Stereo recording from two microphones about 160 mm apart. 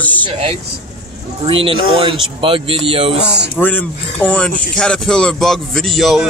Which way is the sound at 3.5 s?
10° left (ahead or behind).